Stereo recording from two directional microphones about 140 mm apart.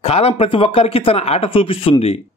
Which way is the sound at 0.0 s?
45° left (ahead or behind).